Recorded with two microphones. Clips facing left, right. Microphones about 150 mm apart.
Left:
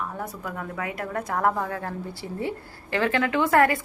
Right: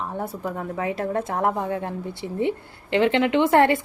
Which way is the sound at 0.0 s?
25° right (ahead or behind).